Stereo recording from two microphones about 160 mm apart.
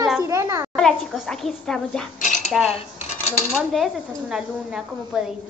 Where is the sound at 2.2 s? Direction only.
50° left (ahead or behind).